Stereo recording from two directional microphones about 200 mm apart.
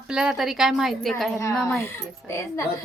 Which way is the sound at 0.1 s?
5° right (ahead or behind).